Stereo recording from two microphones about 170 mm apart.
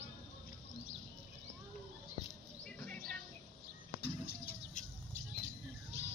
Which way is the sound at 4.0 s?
65° left (ahead or behind).